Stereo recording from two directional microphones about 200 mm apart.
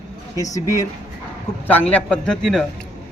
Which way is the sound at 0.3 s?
15° left (ahead or behind).